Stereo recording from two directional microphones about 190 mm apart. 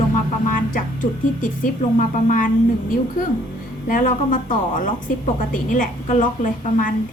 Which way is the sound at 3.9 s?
45° left (ahead or behind).